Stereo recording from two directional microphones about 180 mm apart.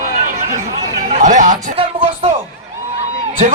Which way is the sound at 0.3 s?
40° right (ahead or behind).